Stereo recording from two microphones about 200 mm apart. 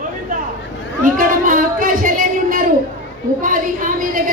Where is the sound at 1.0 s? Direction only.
45° right (ahead or behind).